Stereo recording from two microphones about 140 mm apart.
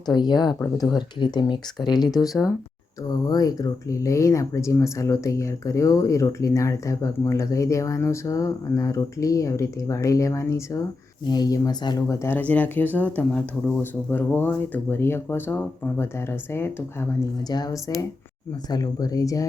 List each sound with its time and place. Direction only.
0.0 s speech: 30° left (ahead or behind)
3.1 s speech: 25° left (ahead or behind)
12.0 s speech: 20° left (ahead or behind)
17.5 s speech: 25° left (ahead or behind)